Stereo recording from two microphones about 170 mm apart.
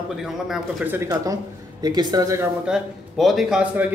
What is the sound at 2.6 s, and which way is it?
A man's voice, centre (ahead or behind).